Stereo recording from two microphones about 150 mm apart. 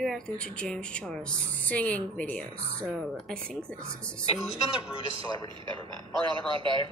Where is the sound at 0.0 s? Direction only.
Centre (ahead or behind).